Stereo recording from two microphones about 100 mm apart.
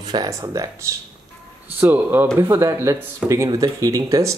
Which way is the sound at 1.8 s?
20° right (ahead or behind).